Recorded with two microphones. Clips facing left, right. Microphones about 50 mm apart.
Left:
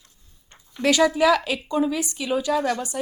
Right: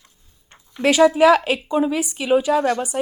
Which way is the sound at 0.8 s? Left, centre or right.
Right.